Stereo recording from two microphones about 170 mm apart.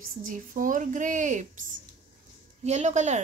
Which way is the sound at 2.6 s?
40° right (ahead or behind).